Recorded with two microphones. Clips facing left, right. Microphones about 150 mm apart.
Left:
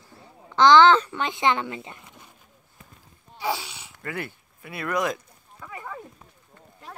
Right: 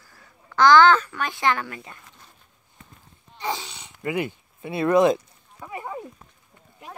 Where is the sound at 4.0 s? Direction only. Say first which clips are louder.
Right 7 dB; 15° right (ahead or behind).